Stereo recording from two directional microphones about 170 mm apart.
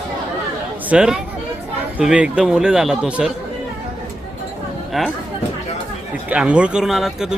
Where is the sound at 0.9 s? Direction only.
5° right (ahead or behind).